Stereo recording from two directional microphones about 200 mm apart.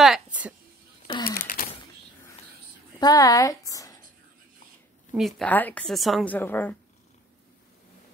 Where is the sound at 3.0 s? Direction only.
20° left (ahead or behind).